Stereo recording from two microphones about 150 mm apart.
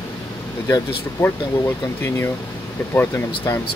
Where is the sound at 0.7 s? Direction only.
20° left (ahead or behind).